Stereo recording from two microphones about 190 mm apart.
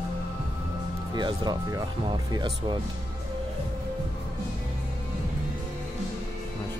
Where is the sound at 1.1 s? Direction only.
20° right (ahead or behind).